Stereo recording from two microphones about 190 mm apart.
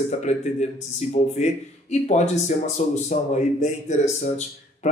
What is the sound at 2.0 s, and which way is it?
A man's voice, 40° left (ahead or behind).